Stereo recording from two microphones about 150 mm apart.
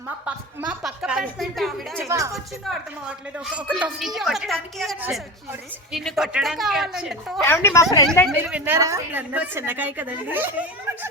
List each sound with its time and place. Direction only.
0.3 s a woman's voice: 5° right (ahead or behind)
2.0 s a woman's voice: 20° right (ahead or behind)
2.3 s a woman's voice: 5° right (ahead or behind)
7.4 s speech: 15° left (ahead or behind)
8.4 s a woman's voice: 10° right (ahead or behind)